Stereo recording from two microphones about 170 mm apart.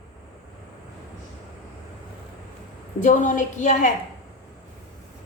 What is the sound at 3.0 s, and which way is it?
Speech, 45° left (ahead or behind).